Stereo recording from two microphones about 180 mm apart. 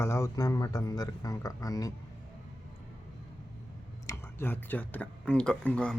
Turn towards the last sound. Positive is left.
turn(degrees=5)  # may be behind; listen again after turning